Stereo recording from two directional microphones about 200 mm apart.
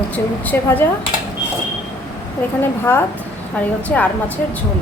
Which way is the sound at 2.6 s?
10° left (ahead or behind).